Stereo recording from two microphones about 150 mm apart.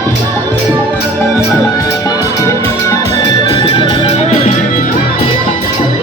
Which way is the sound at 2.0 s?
20° left (ahead or behind).